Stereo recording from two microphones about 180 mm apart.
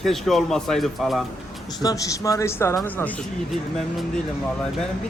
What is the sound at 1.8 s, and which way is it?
Speech, 20° left (ahead or behind).